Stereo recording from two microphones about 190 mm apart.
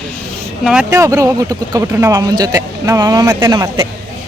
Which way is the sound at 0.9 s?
15° right (ahead or behind).